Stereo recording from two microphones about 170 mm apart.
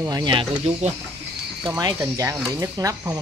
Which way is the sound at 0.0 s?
25° right (ahead or behind).